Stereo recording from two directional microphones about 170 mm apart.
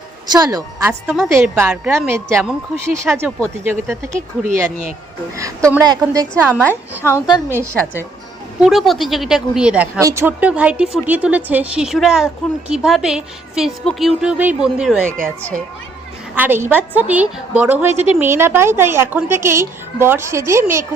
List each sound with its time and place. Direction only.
0.3 s a woman's voice: 20° right (ahead or behind)
4.1 s speech: 50° right (ahead or behind)
5.8 s speech: 20° right (ahead or behind)
6.4 s a woman's voice: 10° right (ahead or behind)
7.0 s a woman's voice: 20° left (ahead or behind)
7.5 s a woman's voice: 15° right (ahead or behind)
8.6 s a woman's voice: centre (ahead or behind)
16.3 s a woman's voice: 10° right (ahead or behind)